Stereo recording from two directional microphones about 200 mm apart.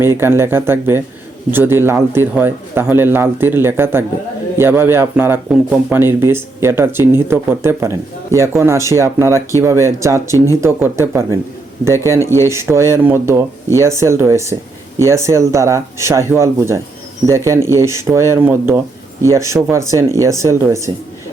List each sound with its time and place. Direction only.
0.0 s speech: 10° right (ahead or behind)
12.4 s speech: 15° right (ahead or behind)